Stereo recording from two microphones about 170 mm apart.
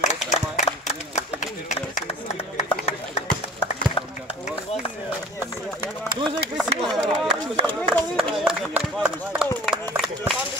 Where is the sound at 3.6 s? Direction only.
35° left (ahead or behind).